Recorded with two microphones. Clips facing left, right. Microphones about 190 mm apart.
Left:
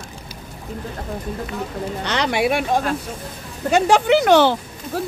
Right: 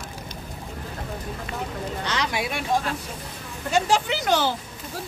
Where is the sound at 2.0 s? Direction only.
65° left (ahead or behind).